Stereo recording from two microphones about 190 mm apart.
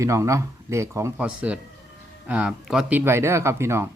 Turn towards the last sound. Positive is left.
turn(degrees=-15)  # may be behind; listen again after turning